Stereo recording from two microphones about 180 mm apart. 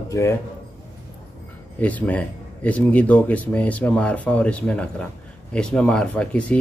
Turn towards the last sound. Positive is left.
turn(degrees=5)  # may be behind; listen again after turning